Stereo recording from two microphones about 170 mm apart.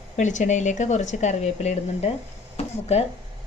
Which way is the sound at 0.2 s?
45° left (ahead or behind).